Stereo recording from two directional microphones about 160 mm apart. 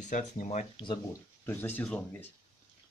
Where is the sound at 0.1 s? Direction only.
50° left (ahead or behind).